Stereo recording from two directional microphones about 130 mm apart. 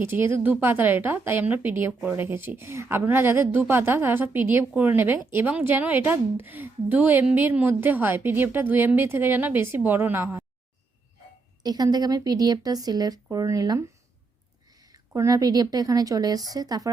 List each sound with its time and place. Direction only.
0.0 s a woman's voice: 20° right (ahead or behind)
11.6 s a woman's voice: 30° right (ahead or behind)